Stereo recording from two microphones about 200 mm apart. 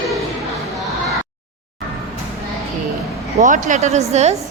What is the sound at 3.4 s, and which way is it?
Speech, 40° right (ahead or behind).